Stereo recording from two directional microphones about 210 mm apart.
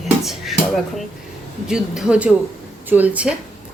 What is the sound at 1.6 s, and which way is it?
Speech, 5° right (ahead or behind).